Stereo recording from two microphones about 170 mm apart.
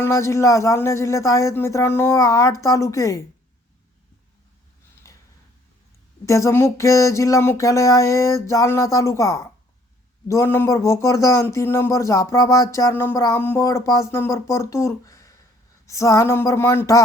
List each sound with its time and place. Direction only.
0.0 s speech: 15° left (ahead or behind)
5.0 s a sound: 20° left (ahead or behind)
6.2 s speech: 15° left (ahead or behind)